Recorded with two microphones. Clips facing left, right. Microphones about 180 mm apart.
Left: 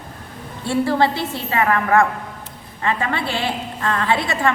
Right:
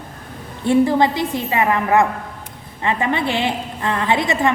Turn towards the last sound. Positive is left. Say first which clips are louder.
# right 2 dB
turn(degrees=-20)  # may be behind; listen again after turning